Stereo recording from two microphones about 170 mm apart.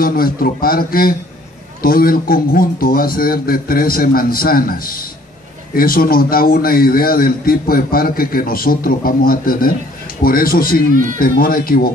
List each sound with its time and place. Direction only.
0.0 s a man's voice: 60° left (ahead or behind)